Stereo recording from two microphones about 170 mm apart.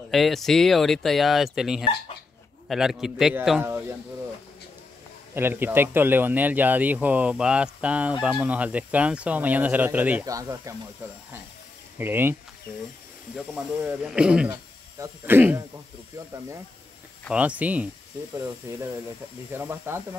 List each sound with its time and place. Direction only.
0.1 s speech: centre (ahead or behind)
5.3 s speech: 15° right (ahead or behind)
12.0 s speech: 10° right (ahead or behind)
13.5 s speech: 5° right (ahead or behind)
17.3 s speech: 10° right (ahead or behind)